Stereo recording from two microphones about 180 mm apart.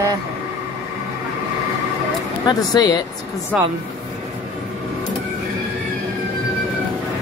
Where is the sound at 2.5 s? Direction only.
20° left (ahead or behind).